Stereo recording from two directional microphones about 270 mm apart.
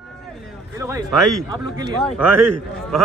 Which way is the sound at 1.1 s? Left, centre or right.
Centre.